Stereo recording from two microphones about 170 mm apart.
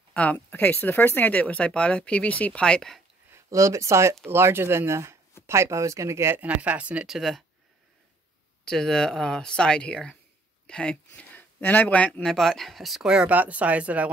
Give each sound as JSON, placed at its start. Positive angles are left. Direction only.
{"t": 0.1, "sound": "speech", "side_deg": 10}
{"t": 3.3, "sound": "speech", "side_deg": -15}
{"t": 8.6, "sound": "speech", "side_deg": 5}